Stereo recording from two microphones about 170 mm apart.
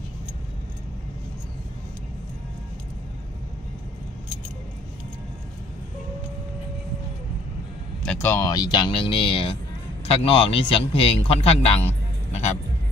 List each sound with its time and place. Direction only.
8.0 s speech: 10° left (ahead or behind); by 12.5 s 40° left (ahead or behind)